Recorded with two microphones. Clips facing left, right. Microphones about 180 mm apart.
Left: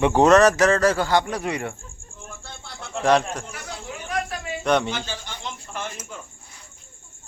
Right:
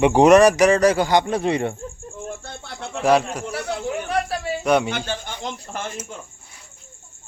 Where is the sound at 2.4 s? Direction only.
65° right (ahead or behind).